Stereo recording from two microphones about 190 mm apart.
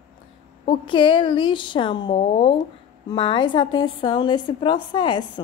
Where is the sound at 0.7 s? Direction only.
25° left (ahead or behind).